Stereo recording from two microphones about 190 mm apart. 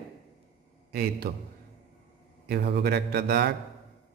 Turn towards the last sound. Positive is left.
turn(degrees=-55)  # may be behind; listen again after turning